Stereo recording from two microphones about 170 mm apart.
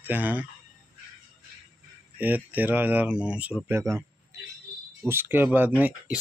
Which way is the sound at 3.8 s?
15° right (ahead or behind).